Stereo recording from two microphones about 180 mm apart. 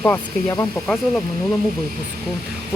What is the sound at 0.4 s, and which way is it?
Speech, 20° left (ahead or behind).